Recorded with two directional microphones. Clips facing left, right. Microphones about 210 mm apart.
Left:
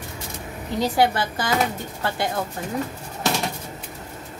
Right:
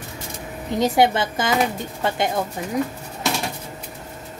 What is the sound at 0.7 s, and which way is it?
A woman's voice, 20° right (ahead or behind).